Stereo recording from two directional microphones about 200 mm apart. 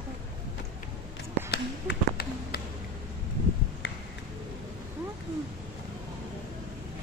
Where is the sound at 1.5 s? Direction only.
50° left (ahead or behind).